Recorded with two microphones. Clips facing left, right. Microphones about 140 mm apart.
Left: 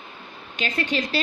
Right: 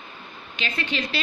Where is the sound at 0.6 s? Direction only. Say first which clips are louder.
Left 3 dB; 45° left (ahead or behind).